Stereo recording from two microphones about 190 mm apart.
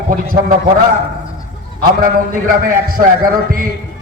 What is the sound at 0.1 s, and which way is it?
Speech, 50° right (ahead or behind).